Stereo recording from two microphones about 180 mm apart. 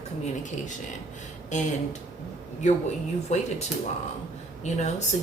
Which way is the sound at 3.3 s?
40° left (ahead or behind).